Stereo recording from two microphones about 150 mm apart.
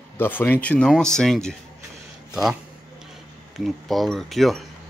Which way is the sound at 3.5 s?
Centre (ahead or behind).